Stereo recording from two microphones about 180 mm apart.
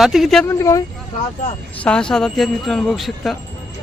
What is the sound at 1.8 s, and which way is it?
Speech, 5° left (ahead or behind).